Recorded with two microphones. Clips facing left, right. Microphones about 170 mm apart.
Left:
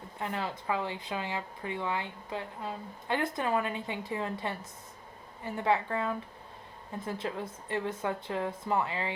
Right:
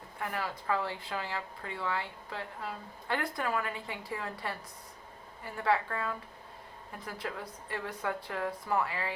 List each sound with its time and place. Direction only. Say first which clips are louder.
0.2 s speech: left 1 dB; 25° left (ahead or behind)